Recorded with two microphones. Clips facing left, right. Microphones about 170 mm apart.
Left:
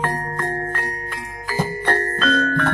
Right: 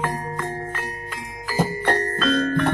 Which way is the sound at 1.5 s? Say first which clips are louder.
Even; 10° right (ahead or behind).